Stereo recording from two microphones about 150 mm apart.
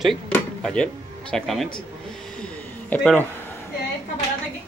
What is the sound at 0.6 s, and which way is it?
Speech, 5° left (ahead or behind).